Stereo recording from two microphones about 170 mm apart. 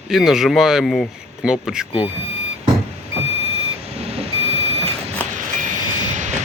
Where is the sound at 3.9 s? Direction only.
40° right (ahead or behind).